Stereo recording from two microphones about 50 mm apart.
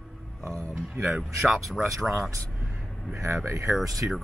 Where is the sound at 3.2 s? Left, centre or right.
Right.